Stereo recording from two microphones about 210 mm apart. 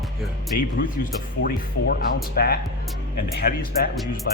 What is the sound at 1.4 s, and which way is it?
Speech, 50° left (ahead or behind).